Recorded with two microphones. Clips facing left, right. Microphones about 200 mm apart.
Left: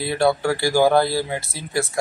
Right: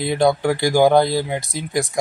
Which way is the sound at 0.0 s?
15° right (ahead or behind).